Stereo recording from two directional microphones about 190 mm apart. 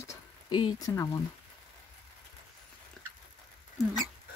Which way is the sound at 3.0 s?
Centre (ahead or behind).